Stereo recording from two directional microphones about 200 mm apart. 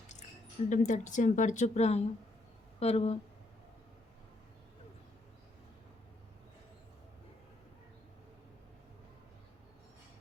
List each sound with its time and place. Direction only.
0.7 s a woman's voice: 40° left (ahead or behind)